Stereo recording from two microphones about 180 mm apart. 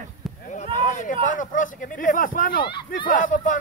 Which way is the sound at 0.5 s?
40° left (ahead or behind).